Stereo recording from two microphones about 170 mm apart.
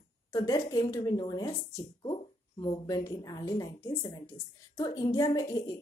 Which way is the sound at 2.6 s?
25° left (ahead or behind).